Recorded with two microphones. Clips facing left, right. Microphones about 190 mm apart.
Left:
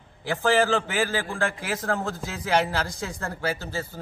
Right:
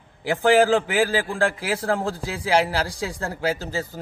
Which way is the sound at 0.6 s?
10° right (ahead or behind).